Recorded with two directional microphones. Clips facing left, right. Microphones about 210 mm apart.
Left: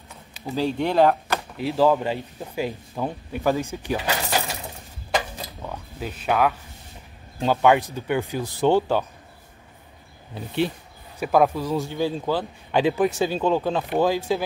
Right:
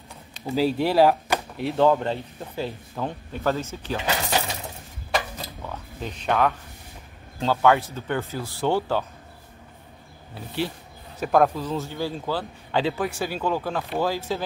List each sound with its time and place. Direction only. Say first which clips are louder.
0.6 s speech: right 1 dB; 5° right (ahead or behind); by 4.0 s 15° left (ahead or behind)
5.1 s dishes: left 1 dB; 15° left (ahead or behind)
7.3 s speech: left 2 dB; 15° left (ahead or behind)
11.1 s speech: left 1 dB; 10° left (ahead or behind)